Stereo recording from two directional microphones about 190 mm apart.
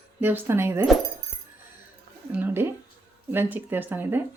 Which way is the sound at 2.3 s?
10° right (ahead or behind).